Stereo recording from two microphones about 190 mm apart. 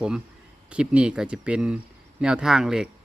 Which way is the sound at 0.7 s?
5° right (ahead or behind).